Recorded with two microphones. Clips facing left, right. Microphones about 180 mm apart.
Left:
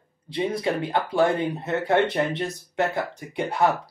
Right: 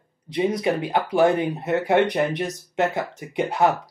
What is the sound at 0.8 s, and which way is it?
Speech, 20° right (ahead or behind).